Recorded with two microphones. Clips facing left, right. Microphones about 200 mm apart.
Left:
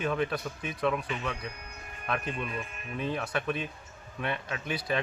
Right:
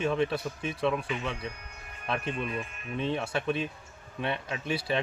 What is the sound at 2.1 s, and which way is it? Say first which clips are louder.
Speech: right 1 dB; 30° right (ahead or behind).